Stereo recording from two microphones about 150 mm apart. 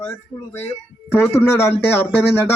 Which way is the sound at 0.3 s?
15° left (ahead or behind).